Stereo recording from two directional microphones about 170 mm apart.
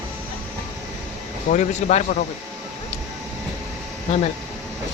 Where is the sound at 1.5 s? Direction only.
45° left (ahead or behind).